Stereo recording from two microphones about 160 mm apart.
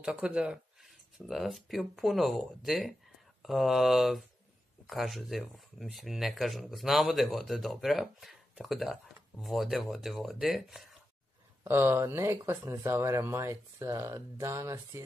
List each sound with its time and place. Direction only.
0.0 s speech: 5° right (ahead or behind)
11.6 s speech: 15° right (ahead or behind)